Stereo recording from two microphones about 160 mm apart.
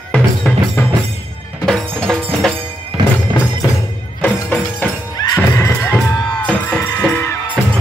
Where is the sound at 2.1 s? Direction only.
Centre (ahead or behind).